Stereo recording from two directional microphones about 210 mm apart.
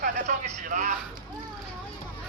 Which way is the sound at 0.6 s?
35° right (ahead or behind).